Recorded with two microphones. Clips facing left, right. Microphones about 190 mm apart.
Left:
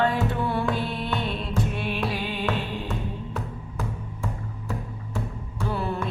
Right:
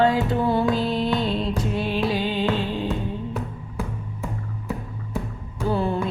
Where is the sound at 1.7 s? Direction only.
30° right (ahead or behind).